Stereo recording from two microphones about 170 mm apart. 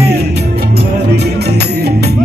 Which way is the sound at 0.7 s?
70° right (ahead or behind).